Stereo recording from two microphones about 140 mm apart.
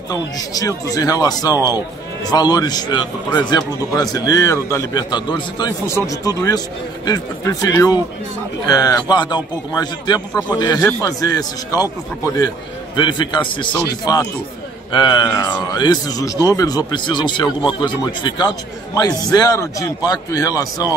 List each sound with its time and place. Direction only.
0.1 s a man's voice: 25° left (ahead or behind)
5.9 s a man's voice: 20° left (ahead or behind)
7.6 s a man's voice: 25° left (ahead or behind)
12.9 s a man's voice: 35° left (ahead or behind)